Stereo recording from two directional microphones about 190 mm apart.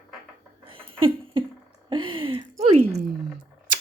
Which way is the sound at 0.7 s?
30° right (ahead or behind).